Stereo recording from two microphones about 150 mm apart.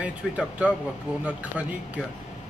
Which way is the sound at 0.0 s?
10° right (ahead or behind).